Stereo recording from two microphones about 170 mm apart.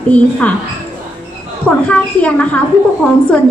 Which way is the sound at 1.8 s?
10° left (ahead or behind).